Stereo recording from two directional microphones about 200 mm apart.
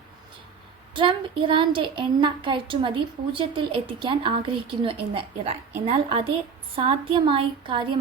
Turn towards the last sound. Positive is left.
turn(degrees=-25)  # may be behind; listen again after turning